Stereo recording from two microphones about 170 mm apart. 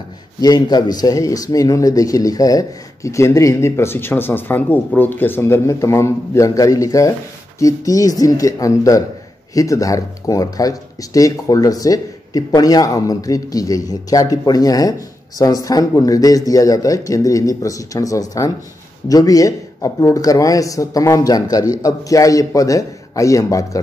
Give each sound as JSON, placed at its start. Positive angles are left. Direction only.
{"t": 0.4, "sound": "speech", "side_deg": 25}